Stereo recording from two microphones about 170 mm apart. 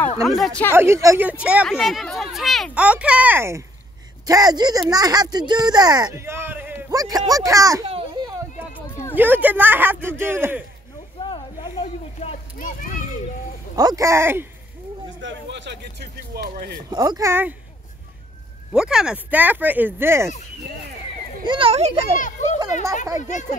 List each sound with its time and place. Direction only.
0.2 s speech: centre (ahead or behind)
0.7 s speech: 15° right (ahead or behind)
7.9 s a sound: 25° right (ahead or behind)
8.7 s a sound: 15° left (ahead or behind)
9.1 s speech: 10° right (ahead or behind)
11.8 s children playing: 40° left (ahead or behind)
13.7 s speech: 20° right (ahead or behind)
15.1 s speech: 90° right; by 16.8 s 65° right (ahead or behind)
16.9 s speech: 25° right (ahead or behind)
18.7 s speech: 5° right (ahead or behind)
21.5 s a child's voice: 30° right (ahead or behind)
23.1 s speech: 45° left (ahead or behind)